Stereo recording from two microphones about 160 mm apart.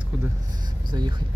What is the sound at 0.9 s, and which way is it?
Speech, 25° right (ahead or behind).